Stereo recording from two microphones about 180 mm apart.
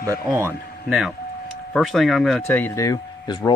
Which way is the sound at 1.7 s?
Centre (ahead or behind).